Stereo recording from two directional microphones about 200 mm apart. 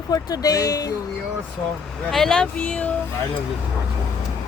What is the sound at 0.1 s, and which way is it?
Speech, 20° left (ahead or behind).